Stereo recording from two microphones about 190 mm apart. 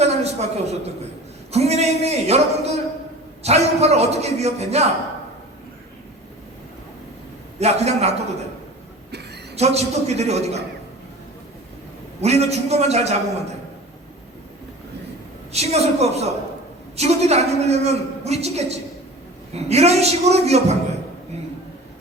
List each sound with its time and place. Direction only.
0.0 s a sound: 35° right (ahead or behind)
1.5 s a woman's voice: 35° right (ahead or behind)
7.6 s a woman's voice: 35° right (ahead or behind)
9.6 s a woman's voice: 35° right (ahead or behind)
12.2 s a woman's voice: 35° right (ahead or behind)
15.5 s a woman's voice: 35° right (ahead or behind)